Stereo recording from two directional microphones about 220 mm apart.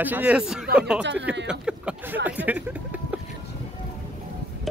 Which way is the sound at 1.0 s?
55° right (ahead or behind).